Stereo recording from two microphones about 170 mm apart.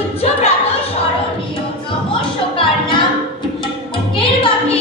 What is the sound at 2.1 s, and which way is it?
Music, 30° left (ahead or behind).